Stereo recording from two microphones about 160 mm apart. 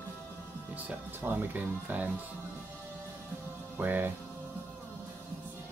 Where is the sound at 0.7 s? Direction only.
10° right (ahead or behind).